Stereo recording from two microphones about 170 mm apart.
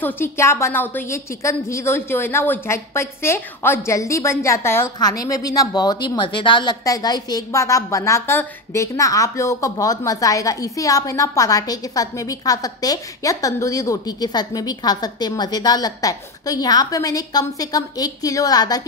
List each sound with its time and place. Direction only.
0.0 s a woman's voice: 15° left (ahead or behind)